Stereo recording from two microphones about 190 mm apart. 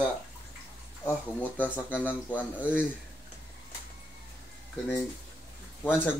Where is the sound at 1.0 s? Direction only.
10° left (ahead or behind).